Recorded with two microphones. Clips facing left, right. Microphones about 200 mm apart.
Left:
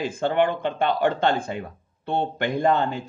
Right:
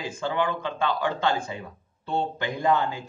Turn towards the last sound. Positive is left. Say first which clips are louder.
# left 3 dB
turn(degrees=55)  # may be behind; listen again after turning